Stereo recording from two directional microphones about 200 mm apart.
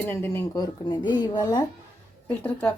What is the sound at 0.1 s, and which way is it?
Speech, 10° left (ahead or behind).